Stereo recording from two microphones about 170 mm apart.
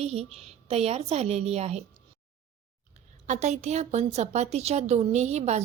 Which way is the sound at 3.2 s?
40° right (ahead or behind).